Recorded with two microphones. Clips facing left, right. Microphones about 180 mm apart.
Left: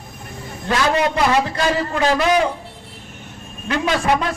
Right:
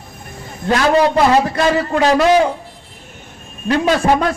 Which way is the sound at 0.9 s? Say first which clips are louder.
Right 7 dB; 35° right (ahead or behind).